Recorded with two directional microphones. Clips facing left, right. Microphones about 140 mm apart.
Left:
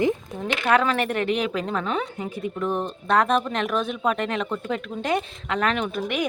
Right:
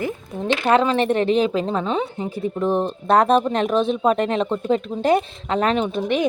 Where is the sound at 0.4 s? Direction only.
30° right (ahead or behind).